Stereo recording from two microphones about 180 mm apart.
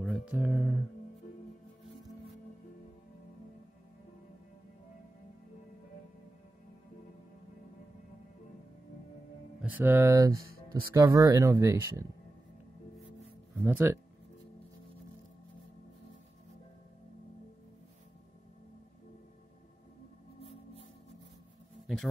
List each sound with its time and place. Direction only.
0.0 s a sound: 5° right (ahead or behind)
9.6 s speech: 10° right (ahead or behind)
13.7 s speech: 10° right (ahead or behind)